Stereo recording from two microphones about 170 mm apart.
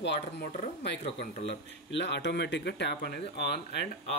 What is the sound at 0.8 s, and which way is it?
Speech, 90° left.